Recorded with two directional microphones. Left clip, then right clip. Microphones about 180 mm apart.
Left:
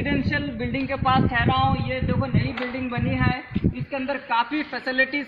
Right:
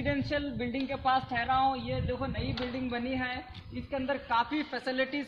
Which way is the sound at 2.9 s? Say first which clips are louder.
Left 9 dB; 20° right (ahead or behind).